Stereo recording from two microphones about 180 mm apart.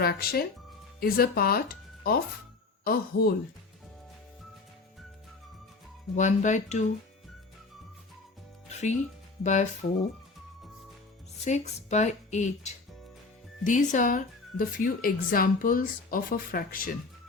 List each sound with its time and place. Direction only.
0.0 s speech: 55° left (ahead or behind)
6.1 s speech: 40° left (ahead or behind)
8.7 s a woman's voice: 40° left (ahead or behind)
11.4 s a woman's voice: 40° left (ahead or behind)